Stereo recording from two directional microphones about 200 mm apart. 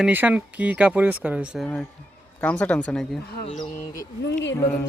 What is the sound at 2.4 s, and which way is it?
Speech, 5° left (ahead or behind).